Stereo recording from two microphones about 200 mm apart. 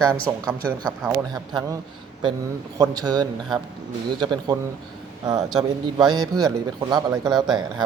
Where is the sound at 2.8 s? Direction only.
20° right (ahead or behind).